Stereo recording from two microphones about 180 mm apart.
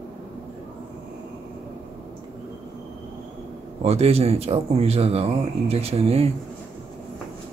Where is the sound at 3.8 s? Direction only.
35° right (ahead or behind).